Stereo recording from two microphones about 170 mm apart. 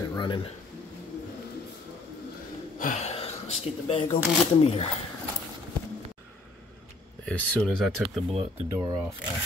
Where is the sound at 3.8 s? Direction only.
35° left (ahead or behind).